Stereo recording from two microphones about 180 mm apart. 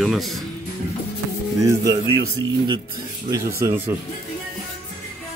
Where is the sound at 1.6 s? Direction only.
20° right (ahead or behind).